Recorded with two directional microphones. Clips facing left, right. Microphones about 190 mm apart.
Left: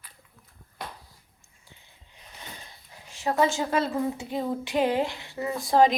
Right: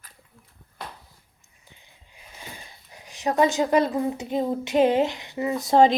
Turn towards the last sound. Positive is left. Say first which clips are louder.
# right 3 dB
turn(degrees=-25)  # may be behind; listen again after turning